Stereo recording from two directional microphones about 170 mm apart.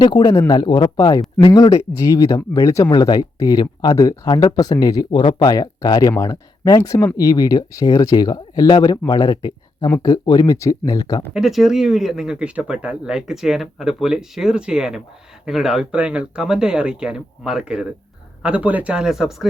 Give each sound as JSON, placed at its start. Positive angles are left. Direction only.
{"t": 0.0, "sound": "speech", "side_deg": 25}
{"t": 11.3, "sound": "speech", "side_deg": 0}